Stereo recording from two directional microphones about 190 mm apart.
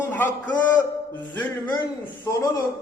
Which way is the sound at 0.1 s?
10° left (ahead or behind).